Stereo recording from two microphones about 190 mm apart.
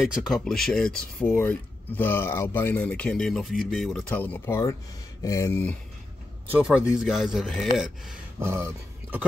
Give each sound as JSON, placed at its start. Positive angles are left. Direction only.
{"t": 0.0, "sound": "speech", "side_deg": 0}
{"t": 6.4, "sound": "speech", "side_deg": -5}
{"t": 8.4, "sound": "speech", "side_deg": -15}